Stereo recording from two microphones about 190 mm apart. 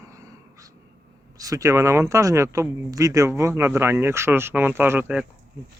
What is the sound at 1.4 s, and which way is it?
Speech, 15° right (ahead or behind).